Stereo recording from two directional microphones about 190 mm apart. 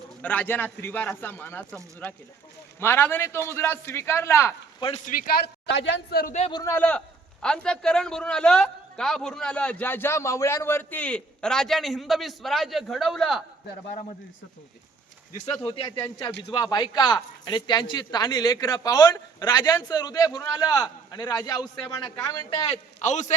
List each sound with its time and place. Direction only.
0.2 s speech: 10° left (ahead or behind)
5.0 s speech: 50° left (ahead or behind)
6.5 s a man's voice: 15° left (ahead or behind); by 13.4 s centre (ahead or behind)
16.0 s speech: 20° left (ahead or behind); by 23.3 s 40° left (ahead or behind)